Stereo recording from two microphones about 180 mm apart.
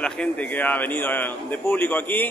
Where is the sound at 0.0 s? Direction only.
5° left (ahead or behind).